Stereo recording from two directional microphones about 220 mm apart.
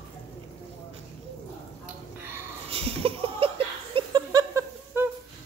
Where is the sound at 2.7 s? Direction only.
25° right (ahead or behind).